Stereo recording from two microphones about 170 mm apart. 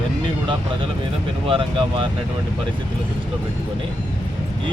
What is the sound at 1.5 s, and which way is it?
Speech, 30° right (ahead or behind).